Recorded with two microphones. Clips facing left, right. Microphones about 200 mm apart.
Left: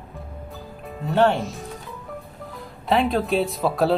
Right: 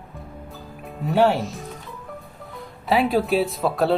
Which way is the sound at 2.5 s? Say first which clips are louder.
Even; centre (ahead or behind).